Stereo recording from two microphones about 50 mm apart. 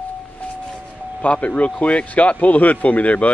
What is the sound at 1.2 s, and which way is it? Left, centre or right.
Speech, left.